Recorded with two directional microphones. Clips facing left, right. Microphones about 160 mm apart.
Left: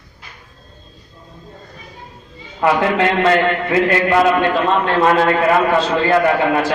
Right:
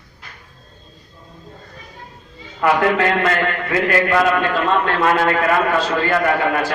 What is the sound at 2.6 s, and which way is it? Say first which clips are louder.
A man's voice: left 1 dB; 25° left (ahead or behind).